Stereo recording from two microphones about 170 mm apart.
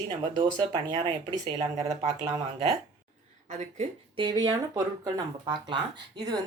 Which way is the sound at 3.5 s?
40° right (ahead or behind).